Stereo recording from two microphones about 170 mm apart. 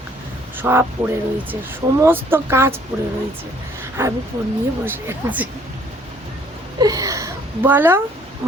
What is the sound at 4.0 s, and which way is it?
Speech, 15° right (ahead or behind).